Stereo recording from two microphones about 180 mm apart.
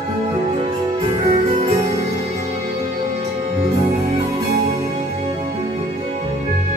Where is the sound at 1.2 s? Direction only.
30° right (ahead or behind).